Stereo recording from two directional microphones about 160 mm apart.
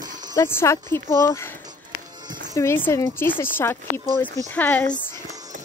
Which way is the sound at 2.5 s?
15° left (ahead or behind).